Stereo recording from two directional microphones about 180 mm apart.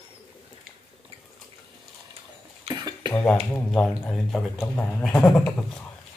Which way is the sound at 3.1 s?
5° left (ahead or behind).